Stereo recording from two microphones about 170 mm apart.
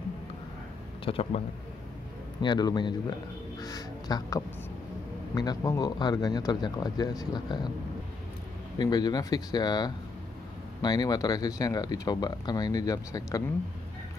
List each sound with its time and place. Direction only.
1.0 s speech: 35° left (ahead or behind)
2.4 s speech: 25° left (ahead or behind)
8.7 s speech: 25° left (ahead or behind)